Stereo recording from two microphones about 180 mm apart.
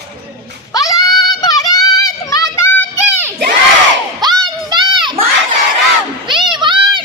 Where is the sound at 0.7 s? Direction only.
20° left (ahead or behind).